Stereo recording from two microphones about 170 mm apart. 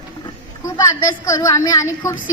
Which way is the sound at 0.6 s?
20° left (ahead or behind).